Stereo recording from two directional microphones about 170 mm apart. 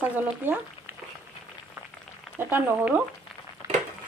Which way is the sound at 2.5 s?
10° right (ahead or behind).